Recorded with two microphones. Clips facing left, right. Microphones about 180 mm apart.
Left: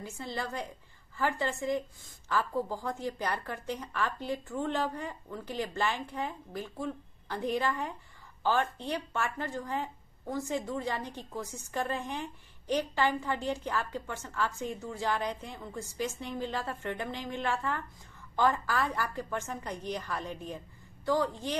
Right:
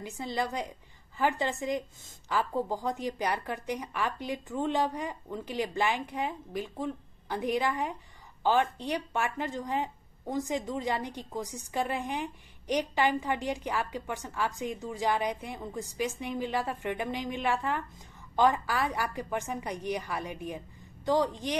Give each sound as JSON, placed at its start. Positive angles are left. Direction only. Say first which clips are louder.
{"t": 0.0, "sound": "a woman's voice", "louder": "right 4 dB", "side_deg": -15}